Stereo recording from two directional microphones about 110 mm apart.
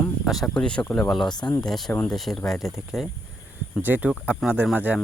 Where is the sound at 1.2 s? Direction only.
40° left (ahead or behind).